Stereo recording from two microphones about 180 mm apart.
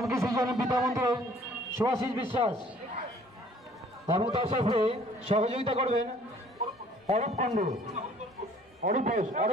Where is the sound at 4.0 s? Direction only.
30° right (ahead or behind).